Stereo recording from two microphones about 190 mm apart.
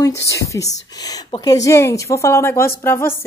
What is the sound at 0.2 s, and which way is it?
A woman's voice, 15° left (ahead or behind).